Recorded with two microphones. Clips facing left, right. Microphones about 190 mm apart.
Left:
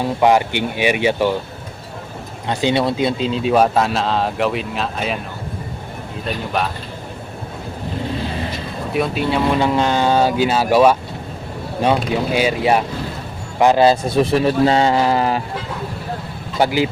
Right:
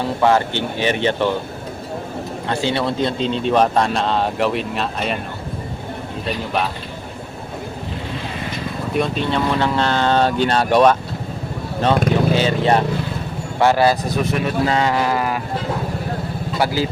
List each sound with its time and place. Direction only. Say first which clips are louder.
0.2 s speech: left 2 dB; 15° left (ahead or behind)
2.5 s speech: left 3 dB; 15° left (ahead or behind); by 5.2 s centre (ahead or behind)
6.2 s speech: even; centre (ahead or behind)
8.9 s speech: left 1 dB; 5° left (ahead or behind)
12.3 s a man's voice: left 4 dB; 10° left (ahead or behind); by 15.4 s 30° left (ahead or behind)
16.6 s speech: left 3 dB; 15° left (ahead or behind)